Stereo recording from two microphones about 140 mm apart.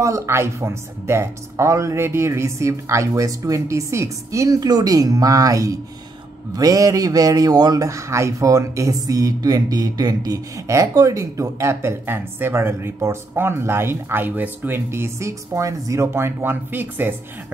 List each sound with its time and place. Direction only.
0.0 s speech: 20° right (ahead or behind)